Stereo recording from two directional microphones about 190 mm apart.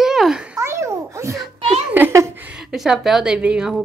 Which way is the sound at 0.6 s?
15° right (ahead or behind).